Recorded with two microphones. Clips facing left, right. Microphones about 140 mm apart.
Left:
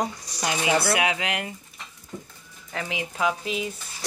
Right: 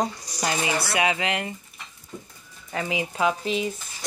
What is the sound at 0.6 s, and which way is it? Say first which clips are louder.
Speech: left 4 dB; 60° left (ahead or behind).